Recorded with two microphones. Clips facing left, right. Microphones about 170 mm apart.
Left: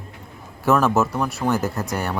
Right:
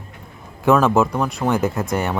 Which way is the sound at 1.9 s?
20° right (ahead or behind).